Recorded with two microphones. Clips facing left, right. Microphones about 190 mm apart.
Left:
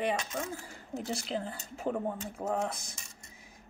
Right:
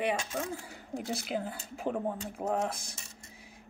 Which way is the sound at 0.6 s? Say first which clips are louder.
Even; 5° right (ahead or behind).